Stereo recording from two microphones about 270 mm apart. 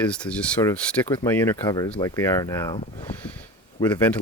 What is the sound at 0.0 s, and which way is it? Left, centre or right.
Speech, centre.